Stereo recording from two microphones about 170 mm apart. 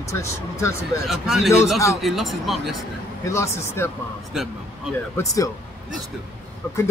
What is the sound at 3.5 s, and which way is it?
Speech, 15° left (ahead or behind).